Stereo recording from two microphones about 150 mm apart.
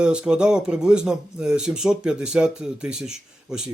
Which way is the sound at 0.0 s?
5° right (ahead or behind).